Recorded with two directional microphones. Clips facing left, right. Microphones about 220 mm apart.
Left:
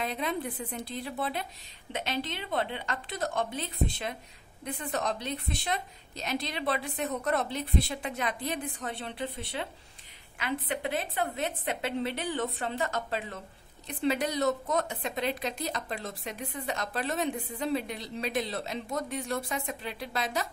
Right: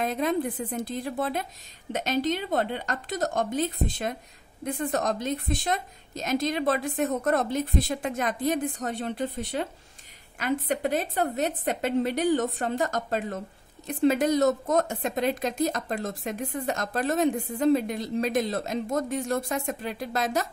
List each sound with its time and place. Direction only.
0.0 s a woman's voice: 45° right (ahead or behind)